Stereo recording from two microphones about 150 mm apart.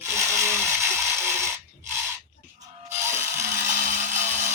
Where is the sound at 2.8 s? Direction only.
15° right (ahead or behind).